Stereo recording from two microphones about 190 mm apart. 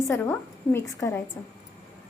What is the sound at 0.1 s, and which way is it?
A woman's voice, 10° left (ahead or behind).